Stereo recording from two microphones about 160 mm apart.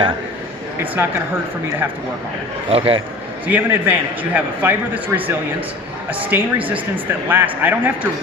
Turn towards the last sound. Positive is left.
turn(degrees=-10)  # may be behind; listen again after turning